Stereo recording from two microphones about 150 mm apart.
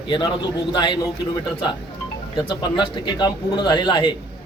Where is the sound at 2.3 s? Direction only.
30° left (ahead or behind).